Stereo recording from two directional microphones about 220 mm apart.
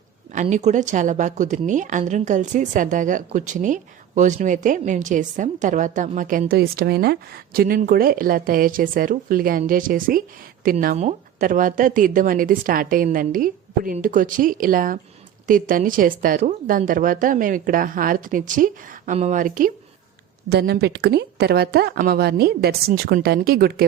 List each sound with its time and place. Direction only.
0.3 s a woman's voice: 30° right (ahead or behind)
20.5 s a woman's voice: 50° right (ahead or behind)